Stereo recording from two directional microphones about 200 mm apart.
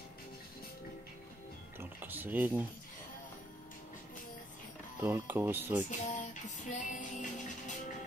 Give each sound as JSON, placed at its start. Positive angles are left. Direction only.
{"t": 1.8, "sound": "a sound", "side_deg": -10}
{"t": 5.0, "sound": "speech", "side_deg": -10}
{"t": 5.9, "sound": "music", "side_deg": 40}